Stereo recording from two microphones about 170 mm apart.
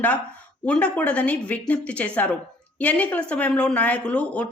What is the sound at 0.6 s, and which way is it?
Speech, 5° left (ahead or behind).